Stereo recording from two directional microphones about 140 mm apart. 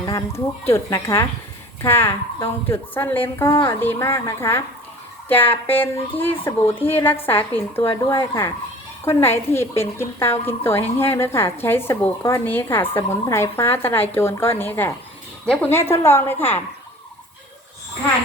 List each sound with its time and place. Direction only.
0.0 s a woman's voice: 20° left (ahead or behind)